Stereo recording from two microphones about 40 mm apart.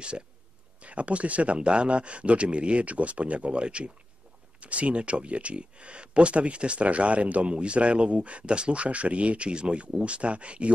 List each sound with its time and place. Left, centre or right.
0.7 s speech: right